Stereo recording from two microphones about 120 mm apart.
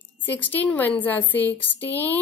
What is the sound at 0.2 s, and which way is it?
A woman's voice, 15° left (ahead or behind).